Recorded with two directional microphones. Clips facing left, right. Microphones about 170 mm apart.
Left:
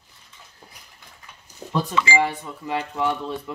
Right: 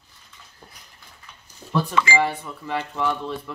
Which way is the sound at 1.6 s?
45° left (ahead or behind).